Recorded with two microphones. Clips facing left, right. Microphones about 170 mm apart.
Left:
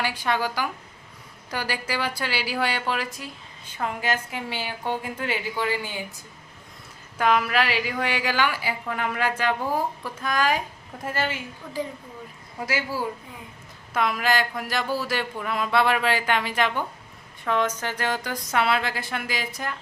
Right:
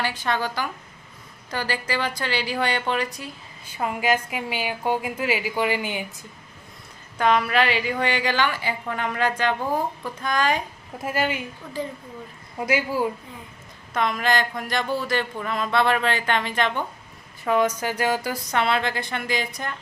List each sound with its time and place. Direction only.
0.0 s speech: 10° left (ahead or behind)
3.7 s a woman's voice: 10° right (ahead or behind)
7.2 s a woman's voice: 5° left (ahead or behind)
11.0 s a woman's voice: 10° right (ahead or behind)
11.8 s speech: 10° left (ahead or behind)
12.5 s speech: 20° right (ahead or behind)
13.9 s speech: 5° left (ahead or behind)
17.4 s a woman's voice: 10° right (ahead or behind)
18.5 s a woman's voice: 5° left (ahead or behind)